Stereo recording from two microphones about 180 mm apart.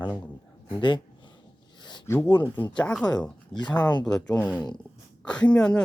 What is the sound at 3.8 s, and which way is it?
Speech, 25° left (ahead or behind).